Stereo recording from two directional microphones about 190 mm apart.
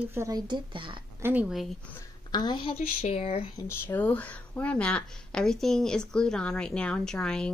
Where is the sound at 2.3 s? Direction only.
25° left (ahead or behind).